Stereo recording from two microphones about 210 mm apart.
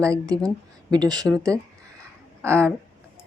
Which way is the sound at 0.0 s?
15° right (ahead or behind).